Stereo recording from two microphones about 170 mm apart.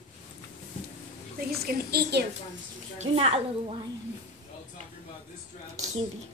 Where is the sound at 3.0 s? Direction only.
35° right (ahead or behind).